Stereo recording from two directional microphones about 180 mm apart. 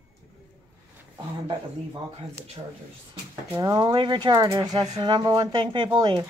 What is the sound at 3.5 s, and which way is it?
Speech, 20° right (ahead or behind).